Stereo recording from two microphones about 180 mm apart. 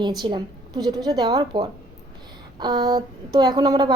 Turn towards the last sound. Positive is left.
turn(degrees=-20)  # may be behind; listen again after turning